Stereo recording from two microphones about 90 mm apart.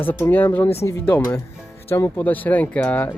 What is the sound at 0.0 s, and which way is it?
Speech, 20° left (ahead or behind).